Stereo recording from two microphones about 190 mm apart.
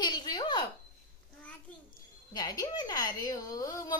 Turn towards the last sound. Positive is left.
turn(degrees=20)  # may be behind; listen again after turning